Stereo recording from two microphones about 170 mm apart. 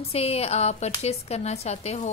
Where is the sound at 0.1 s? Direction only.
35° left (ahead or behind).